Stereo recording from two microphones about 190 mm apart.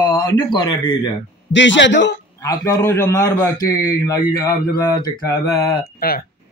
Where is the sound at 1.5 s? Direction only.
75° left (ahead or behind).